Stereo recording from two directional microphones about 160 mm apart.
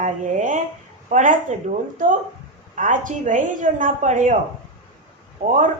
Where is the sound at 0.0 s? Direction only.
50° right (ahead or behind).